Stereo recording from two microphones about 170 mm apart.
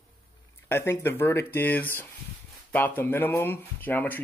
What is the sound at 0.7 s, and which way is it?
Speech, 15° left (ahead or behind).